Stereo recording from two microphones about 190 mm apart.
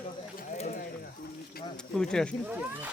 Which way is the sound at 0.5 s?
35° left (ahead or behind).